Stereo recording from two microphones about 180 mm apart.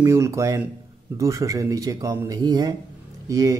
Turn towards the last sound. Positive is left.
turn(degrees=-20)  # may be behind; listen again after turning